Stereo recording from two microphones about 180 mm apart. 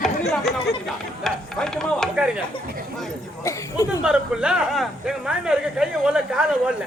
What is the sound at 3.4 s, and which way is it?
Speech, 20° left (ahead or behind).